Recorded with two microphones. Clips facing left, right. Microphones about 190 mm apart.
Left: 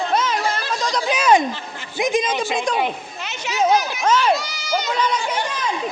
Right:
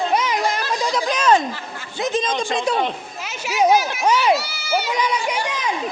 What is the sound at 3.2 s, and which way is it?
Speech, 5° right (ahead or behind).